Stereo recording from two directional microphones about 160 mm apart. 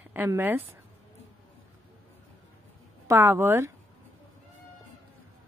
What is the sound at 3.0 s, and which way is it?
Speech, 15° right (ahead or behind).